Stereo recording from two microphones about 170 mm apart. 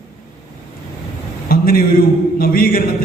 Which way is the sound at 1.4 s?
60° left (ahead or behind).